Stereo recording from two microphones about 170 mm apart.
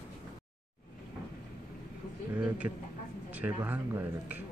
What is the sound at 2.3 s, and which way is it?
A man's voice, 10° right (ahead or behind).